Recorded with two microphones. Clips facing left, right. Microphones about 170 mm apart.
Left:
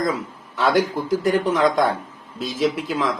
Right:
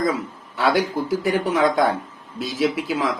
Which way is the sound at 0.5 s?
5° right (ahead or behind).